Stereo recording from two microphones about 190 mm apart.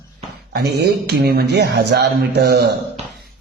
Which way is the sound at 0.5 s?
60° right (ahead or behind).